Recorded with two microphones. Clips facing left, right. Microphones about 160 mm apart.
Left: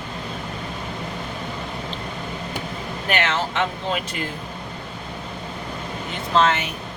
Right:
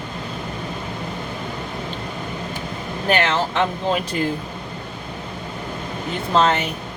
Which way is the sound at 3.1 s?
35° right (ahead or behind).